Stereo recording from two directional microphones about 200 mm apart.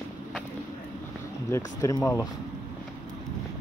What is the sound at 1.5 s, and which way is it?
Speech, 15° left (ahead or behind).